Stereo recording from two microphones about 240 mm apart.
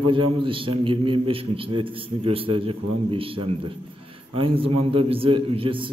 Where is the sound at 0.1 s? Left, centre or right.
Right.